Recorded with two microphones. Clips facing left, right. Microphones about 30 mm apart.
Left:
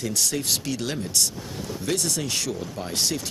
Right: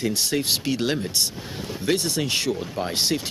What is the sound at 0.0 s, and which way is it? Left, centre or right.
Speech, right.